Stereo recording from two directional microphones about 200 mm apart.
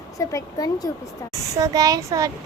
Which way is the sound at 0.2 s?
15° left (ahead or behind).